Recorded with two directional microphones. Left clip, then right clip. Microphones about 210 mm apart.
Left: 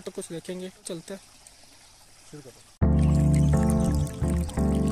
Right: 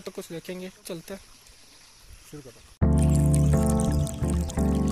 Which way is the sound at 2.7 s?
Centre (ahead or behind).